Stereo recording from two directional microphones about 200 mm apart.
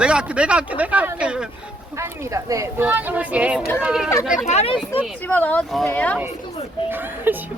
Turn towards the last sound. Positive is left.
turn(degrees=-10)  # may be behind; listen again after turning